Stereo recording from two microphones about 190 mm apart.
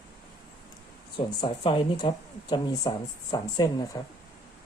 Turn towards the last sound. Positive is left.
turn(degrees=20)  # may be behind; listen again after turning